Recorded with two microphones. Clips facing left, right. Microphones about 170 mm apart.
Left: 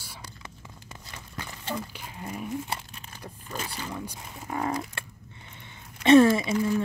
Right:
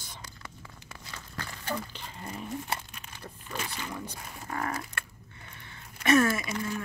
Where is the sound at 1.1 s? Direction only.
15° left (ahead or behind).